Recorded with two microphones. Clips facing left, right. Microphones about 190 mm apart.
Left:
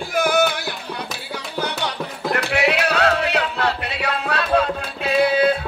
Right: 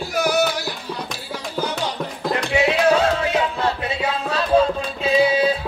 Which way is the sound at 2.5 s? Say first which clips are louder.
Right 5 dB; 70° left (ahead or behind).